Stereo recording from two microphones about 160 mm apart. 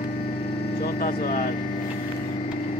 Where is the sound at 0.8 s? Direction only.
65° left (ahead or behind).